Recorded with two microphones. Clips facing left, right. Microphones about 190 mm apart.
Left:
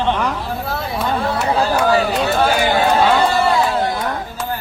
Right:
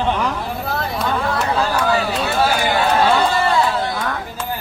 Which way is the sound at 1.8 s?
40° left (ahead or behind).